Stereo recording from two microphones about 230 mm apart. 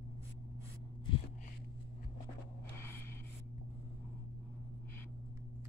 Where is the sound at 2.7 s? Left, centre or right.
Centre.